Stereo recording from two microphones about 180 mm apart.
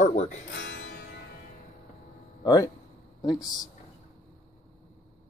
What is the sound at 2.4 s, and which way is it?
Speech, 20° left (ahead or behind).